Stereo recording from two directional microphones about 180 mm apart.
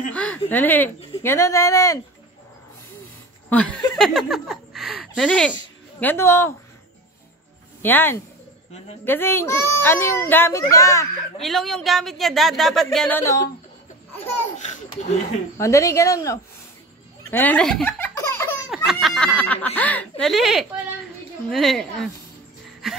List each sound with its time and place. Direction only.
0.1 s a sound: 5° left (ahead or behind)
0.5 s a child's voice: 10° left (ahead or behind)
3.4 s a sound: 5° left (ahead or behind)
4.0 s a child's voice: centre (ahead or behind)
7.8 s a child's voice: 10° left (ahead or behind)
11.4 s speech: centre (ahead or behind)
14.6 s speech: 40° left (ahead or behind)
15.5 s a child's voice: 15° left (ahead or behind)
17.3 s belly laugh: 10° left (ahead or behind)
18.7 s speech: centre (ahead or behind)